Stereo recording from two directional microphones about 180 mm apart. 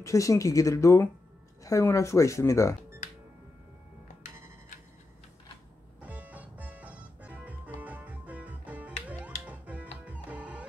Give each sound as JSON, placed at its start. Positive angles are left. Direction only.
{"t": 0.0, "sound": "speech", "side_deg": 15}
{"t": 5.9, "sound": "music", "side_deg": -10}